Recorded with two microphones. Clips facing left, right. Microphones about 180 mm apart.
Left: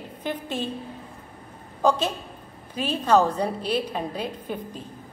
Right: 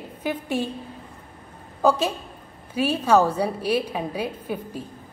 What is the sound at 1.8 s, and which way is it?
A woman's voice, 10° right (ahead or behind).